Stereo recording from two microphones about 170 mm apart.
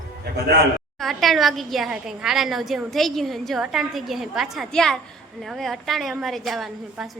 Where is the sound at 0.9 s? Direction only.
Centre (ahead or behind).